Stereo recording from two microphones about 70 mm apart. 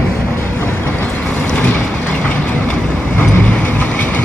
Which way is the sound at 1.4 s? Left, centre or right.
Left.